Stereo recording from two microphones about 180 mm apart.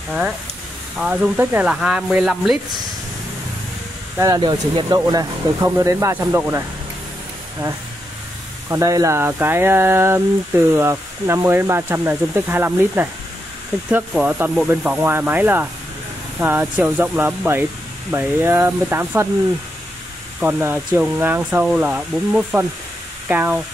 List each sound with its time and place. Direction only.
0.9 s speech: 5° right (ahead or behind)
4.4 s speech: 25° right (ahead or behind)
8.6 s speech: 15° right (ahead or behind)
20.3 s speech: 10° right (ahead or behind)